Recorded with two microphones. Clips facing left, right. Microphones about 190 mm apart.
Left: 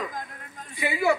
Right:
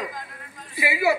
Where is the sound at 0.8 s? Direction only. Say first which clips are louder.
Right 2 dB; 5° right (ahead or behind).